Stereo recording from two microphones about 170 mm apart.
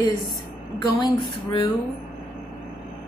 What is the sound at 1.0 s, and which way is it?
Speech, 25° left (ahead or behind).